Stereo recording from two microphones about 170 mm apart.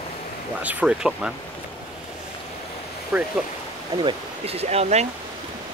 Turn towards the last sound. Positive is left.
turn(degrees=-40)  # may be behind; listen again after turning